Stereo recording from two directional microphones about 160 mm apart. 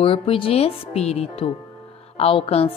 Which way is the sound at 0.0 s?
35° left (ahead or behind).